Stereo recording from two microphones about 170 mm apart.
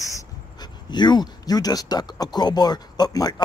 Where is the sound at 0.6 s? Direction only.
25° left (ahead or behind).